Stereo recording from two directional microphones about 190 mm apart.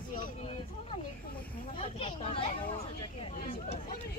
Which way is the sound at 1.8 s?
30° left (ahead or behind).